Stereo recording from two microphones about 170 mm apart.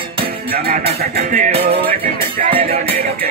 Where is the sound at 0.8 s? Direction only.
40° right (ahead or behind).